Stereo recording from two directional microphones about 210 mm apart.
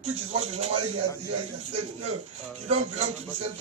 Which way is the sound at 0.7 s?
90° right.